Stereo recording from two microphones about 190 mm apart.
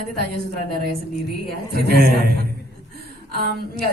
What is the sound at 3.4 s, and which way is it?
Speech, 60° right (ahead or behind).